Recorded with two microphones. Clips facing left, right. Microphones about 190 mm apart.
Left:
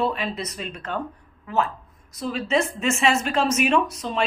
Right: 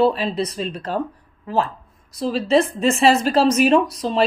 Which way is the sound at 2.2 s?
35° right (ahead or behind).